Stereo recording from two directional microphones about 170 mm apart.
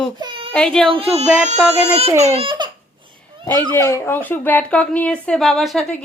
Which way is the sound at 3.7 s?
15° left (ahead or behind).